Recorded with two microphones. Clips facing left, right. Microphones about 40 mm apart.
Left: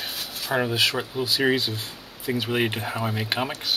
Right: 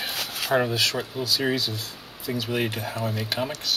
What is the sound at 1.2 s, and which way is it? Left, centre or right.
Speech, left.